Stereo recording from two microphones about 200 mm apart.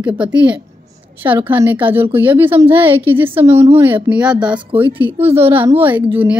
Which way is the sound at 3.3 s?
30° right (ahead or behind).